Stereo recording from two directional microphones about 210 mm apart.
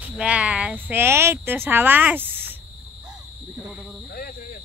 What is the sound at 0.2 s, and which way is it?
Speech, 5° right (ahead or behind).